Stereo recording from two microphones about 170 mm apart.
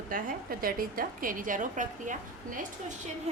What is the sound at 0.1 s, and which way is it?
A woman's voice, 55° right (ahead or behind).